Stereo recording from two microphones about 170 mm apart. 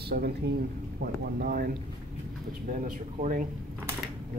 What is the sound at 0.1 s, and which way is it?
Speech, 65° right (ahead or behind).